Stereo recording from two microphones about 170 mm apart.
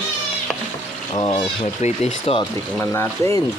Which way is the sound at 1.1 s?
30° left (ahead or behind).